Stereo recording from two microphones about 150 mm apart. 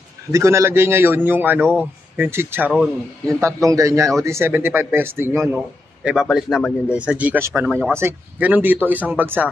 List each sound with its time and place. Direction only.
0.3 s a man's voice: 20° right (ahead or behind)
6.0 s a man's voice: centre (ahead or behind)